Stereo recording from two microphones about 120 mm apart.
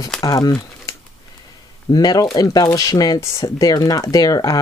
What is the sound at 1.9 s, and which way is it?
Speech, 30° left (ahead or behind).